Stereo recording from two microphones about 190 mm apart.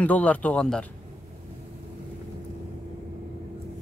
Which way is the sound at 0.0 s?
5° left (ahead or behind).